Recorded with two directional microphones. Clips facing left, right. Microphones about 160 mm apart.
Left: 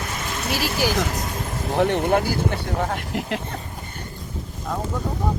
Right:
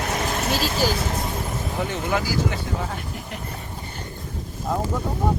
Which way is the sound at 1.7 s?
65° left (ahead or behind).